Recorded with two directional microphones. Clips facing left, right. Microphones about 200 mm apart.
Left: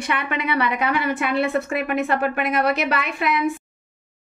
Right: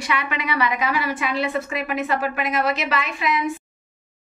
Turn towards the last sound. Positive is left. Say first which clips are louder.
# left 1 dB
turn(degrees=60)  # may be behind; listen again after turning